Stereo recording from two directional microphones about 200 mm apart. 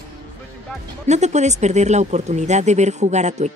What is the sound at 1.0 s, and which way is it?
Speech, 35° right (ahead or behind).